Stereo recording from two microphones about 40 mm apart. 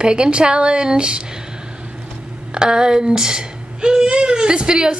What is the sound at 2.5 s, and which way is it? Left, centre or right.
A woman's voice, right.